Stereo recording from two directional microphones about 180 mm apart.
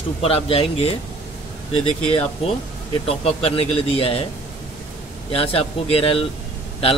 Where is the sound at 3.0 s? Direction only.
35° left (ahead or behind).